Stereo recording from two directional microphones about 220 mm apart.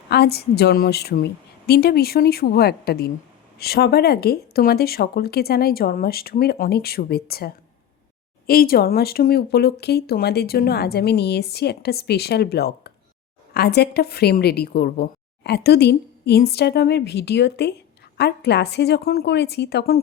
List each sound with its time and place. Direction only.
0.1 s speech: 45° left (ahead or behind)